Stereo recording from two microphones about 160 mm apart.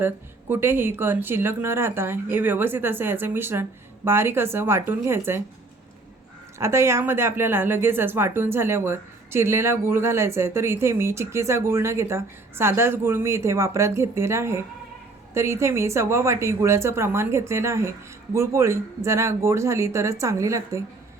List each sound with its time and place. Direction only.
0.0 s speech: 15° right (ahead or behind)
6.6 s speech: 15° right (ahead or behind)